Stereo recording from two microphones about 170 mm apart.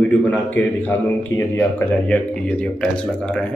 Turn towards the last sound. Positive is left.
turn(degrees=10)  # may be behind; listen again after turning